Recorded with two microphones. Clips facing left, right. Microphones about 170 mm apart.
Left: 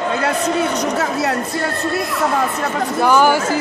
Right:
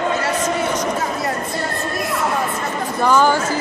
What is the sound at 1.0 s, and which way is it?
Speech, 75° left (ahead or behind).